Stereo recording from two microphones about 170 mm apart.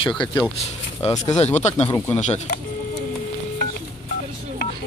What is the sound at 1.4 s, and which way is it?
Speech, 40° left (ahead or behind).